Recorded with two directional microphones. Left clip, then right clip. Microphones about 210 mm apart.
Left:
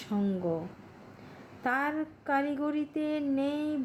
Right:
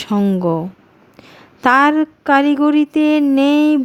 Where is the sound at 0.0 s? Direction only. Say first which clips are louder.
Right 15 dB; 50° right (ahead or behind).